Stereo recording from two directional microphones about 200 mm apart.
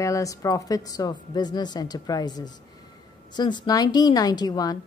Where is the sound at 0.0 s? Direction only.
15° left (ahead or behind).